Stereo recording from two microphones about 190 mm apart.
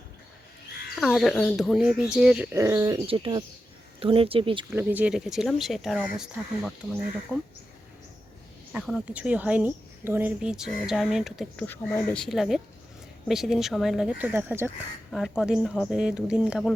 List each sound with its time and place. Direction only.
0.9 s a woman's voice: centre (ahead or behind); by 4.6 s 30° right (ahead or behind)
4.7 s a woman's voice: 10° right (ahead or behind)
7.3 s speech: 10° right (ahead or behind)
8.7 s a woman's voice: 5° right (ahead or behind)
11.6 s speech: 10° left (ahead or behind)
12.2 s a woman's voice: centre (ahead or behind)
15.1 s a woman's voice: centre (ahead or behind)